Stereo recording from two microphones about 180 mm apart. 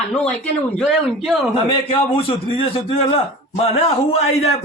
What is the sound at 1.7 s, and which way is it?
A man's voice, 30° left (ahead or behind).